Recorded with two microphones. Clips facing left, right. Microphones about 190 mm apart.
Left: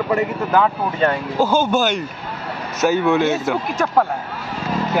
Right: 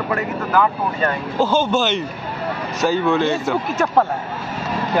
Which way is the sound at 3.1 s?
5° left (ahead or behind).